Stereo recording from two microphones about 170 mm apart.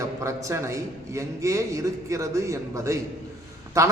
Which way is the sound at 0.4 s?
15° right (ahead or behind).